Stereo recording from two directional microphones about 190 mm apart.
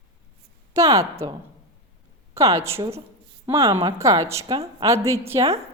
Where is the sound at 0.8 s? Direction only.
15° right (ahead or behind).